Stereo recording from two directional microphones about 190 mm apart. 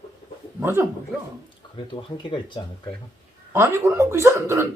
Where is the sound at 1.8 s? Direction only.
25° left (ahead or behind).